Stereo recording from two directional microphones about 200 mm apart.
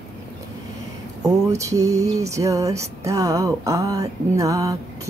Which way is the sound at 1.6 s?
15° right (ahead or behind).